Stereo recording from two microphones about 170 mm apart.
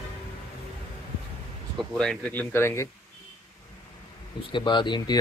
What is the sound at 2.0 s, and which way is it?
Speech, 5° left (ahead or behind).